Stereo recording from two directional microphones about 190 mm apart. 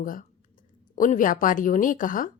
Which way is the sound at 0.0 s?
45° left (ahead or behind).